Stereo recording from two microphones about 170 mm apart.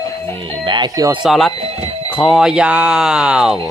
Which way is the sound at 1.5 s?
35° right (ahead or behind).